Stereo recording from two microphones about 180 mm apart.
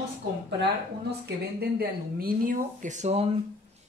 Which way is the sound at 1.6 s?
55° right (ahead or behind).